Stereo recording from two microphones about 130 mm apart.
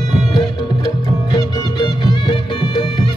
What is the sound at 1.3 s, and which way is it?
Music, 35° left (ahead or behind).